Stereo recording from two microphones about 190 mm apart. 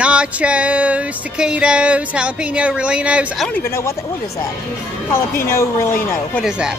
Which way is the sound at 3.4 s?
10° left (ahead or behind).